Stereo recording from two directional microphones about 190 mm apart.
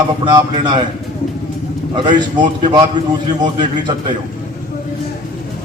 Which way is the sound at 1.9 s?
25° right (ahead or behind).